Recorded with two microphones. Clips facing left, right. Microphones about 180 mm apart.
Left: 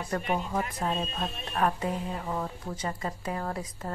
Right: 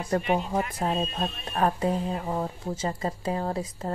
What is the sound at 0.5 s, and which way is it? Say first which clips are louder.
Speech: right 3 dB; 30° right (ahead or behind).